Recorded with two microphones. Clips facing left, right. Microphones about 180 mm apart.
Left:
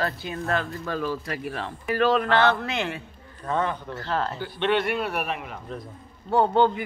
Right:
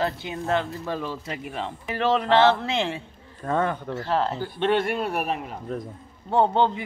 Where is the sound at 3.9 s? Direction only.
25° right (ahead or behind).